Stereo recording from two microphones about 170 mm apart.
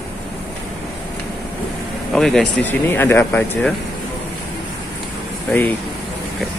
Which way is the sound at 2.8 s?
15° left (ahead or behind).